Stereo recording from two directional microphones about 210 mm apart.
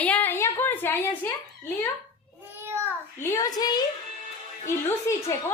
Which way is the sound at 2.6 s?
10° right (ahead or behind).